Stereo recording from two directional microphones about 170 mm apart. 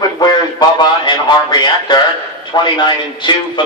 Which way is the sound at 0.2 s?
25° left (ahead or behind).